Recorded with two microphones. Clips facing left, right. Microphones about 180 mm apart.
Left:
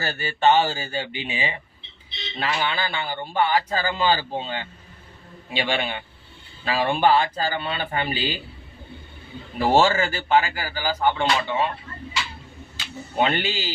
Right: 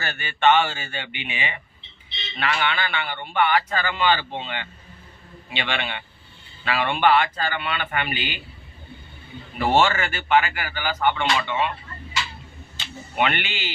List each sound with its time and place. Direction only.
0.0 s speech: 35° left (ahead or behind)
9.6 s speech: 35° left (ahead or behind)
13.1 s speech: 35° left (ahead or behind)